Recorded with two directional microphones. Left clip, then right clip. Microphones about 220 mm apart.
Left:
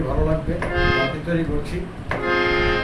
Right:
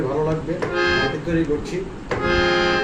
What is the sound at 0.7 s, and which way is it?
Speech, 15° right (ahead or behind).